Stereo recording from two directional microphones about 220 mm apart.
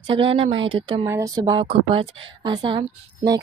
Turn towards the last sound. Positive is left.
turn(degrees=-20)  # may be behind; listen again after turning